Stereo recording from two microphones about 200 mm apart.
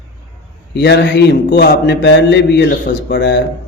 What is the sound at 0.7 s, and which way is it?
Speech, 60° left (ahead or behind).